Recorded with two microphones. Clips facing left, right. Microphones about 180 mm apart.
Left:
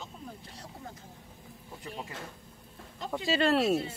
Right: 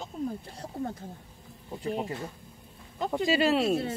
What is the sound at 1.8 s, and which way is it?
Speech, 40° right (ahead or behind).